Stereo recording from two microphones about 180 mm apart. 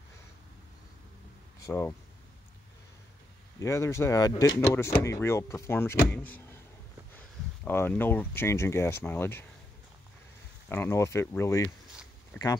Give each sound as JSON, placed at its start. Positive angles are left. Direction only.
{"t": 1.6, "sound": "speech", "side_deg": 15}
{"t": 3.5, "sound": "speech", "side_deg": 15}
{"t": 10.7, "sound": "speech", "side_deg": 15}